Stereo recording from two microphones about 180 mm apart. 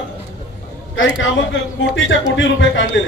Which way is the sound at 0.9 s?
90° left.